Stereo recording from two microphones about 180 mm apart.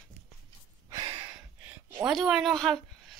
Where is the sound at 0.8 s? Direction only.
20° right (ahead or behind).